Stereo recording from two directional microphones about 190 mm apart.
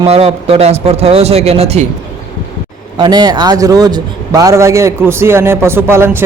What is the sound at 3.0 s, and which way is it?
A man's voice, 20° right (ahead or behind).